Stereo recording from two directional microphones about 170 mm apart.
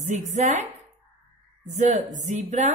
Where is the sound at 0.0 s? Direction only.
45° right (ahead or behind).